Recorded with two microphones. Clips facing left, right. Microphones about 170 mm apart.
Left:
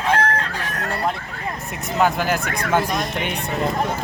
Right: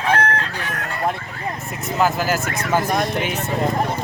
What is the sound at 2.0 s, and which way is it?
Speech, centre (ahead or behind).